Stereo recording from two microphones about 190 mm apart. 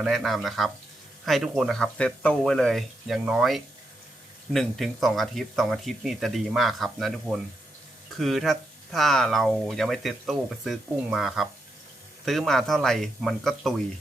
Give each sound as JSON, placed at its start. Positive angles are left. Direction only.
{"t": 0.0, "sound": "speech", "side_deg": 0}